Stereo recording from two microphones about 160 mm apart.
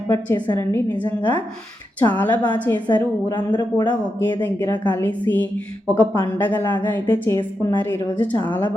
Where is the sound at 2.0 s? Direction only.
10° left (ahead or behind).